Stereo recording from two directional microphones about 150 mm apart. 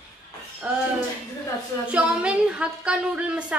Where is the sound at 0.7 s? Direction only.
10° right (ahead or behind).